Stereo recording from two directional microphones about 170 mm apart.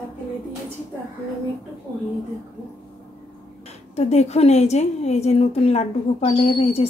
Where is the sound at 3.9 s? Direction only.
40° left (ahead or behind).